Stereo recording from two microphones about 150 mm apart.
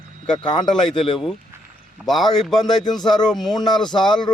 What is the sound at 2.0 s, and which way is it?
Speech, centre (ahead or behind).